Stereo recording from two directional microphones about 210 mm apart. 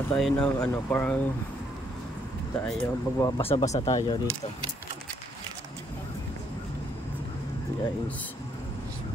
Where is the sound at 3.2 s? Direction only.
15° left (ahead or behind).